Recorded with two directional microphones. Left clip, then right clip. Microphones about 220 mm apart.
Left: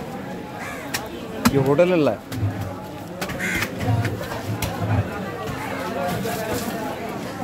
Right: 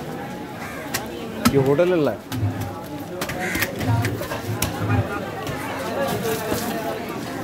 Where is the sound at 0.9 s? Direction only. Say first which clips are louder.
Right 1 dB; 10° left (ahead or behind).